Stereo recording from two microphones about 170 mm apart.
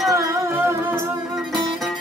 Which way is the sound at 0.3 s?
15° right (ahead or behind).